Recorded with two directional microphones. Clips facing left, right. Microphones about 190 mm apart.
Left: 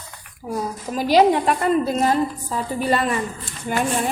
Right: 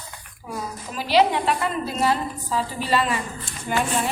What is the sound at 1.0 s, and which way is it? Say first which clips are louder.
A woman's voice: left 4 dB; 45° left (ahead or behind).